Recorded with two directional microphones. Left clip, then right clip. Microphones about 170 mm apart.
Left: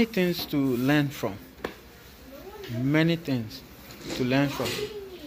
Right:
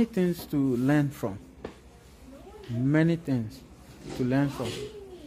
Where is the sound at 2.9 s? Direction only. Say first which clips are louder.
Left 1 dB; 30° right (ahead or behind).